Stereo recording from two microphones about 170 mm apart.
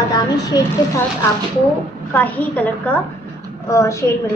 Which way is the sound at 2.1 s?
10° left (ahead or behind).